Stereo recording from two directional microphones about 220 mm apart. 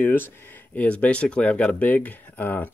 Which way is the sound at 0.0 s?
10° left (ahead or behind).